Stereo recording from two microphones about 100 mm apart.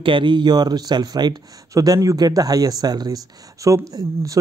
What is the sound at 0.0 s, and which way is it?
Speech, 55° right (ahead or behind).